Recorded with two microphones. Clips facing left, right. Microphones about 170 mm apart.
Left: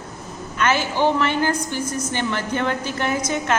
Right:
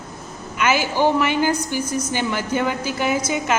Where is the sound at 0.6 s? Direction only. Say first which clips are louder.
Right 1 dB; 10° right (ahead or behind).